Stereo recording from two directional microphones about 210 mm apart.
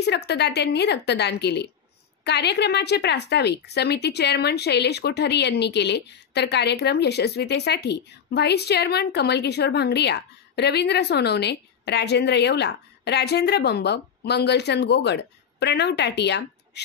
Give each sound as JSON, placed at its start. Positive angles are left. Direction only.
{"t": 0.0, "sound": "a woman's voice", "side_deg": 50}